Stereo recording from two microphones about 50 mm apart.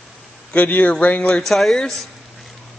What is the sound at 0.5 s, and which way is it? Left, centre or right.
Speech, left.